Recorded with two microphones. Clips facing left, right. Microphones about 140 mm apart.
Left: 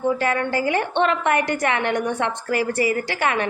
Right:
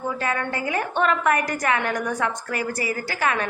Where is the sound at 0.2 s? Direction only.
30° left (ahead or behind).